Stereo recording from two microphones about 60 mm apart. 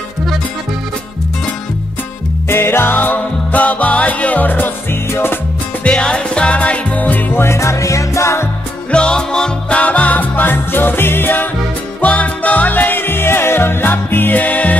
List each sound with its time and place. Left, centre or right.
2.4 s music: left
5.9 s music: centre; by 7.5 s left
7.5 s music: left
8.9 s music: centre
9.8 s music: left
12.0 s music: left